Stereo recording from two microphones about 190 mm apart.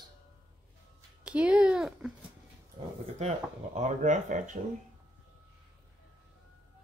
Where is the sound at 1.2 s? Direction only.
5° right (ahead or behind).